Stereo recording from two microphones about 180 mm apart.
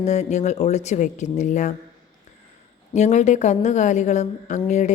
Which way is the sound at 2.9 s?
40° left (ahead or behind).